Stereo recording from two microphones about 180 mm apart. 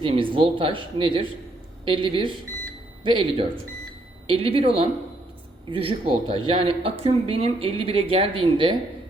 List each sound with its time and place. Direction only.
0.0 s a woman's voice: 30° right (ahead or behind)